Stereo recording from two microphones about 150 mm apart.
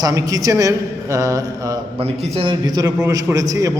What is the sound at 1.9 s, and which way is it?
A man's voice, 40° right (ahead or behind).